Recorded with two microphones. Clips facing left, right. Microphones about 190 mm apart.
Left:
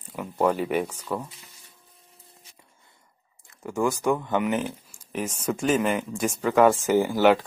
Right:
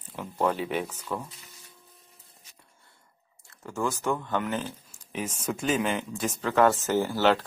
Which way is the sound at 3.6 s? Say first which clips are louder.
Left 5 dB; 15° left (ahead or behind).